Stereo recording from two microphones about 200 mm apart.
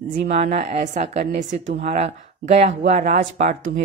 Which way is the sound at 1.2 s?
50° right (ahead or behind).